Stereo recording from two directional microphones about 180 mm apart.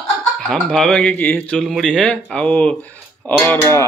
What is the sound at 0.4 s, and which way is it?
Speech, centre (ahead or behind).